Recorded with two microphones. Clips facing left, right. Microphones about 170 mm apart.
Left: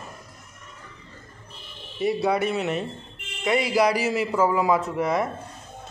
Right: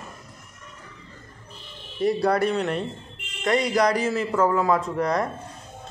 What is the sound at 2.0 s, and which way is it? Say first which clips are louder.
A man's voice: right 2 dB; 5° left (ahead or behind).